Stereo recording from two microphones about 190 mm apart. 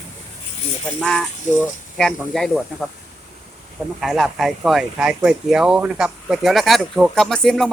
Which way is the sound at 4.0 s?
Centre (ahead or behind).